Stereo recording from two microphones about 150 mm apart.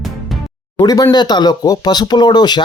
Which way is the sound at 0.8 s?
25° left (ahead or behind).